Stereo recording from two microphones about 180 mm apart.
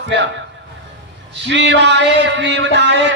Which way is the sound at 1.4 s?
80° right.